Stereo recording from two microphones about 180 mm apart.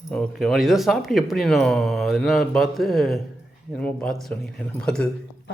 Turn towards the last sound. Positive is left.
turn(degrees=5)  # may be behind; listen again after turning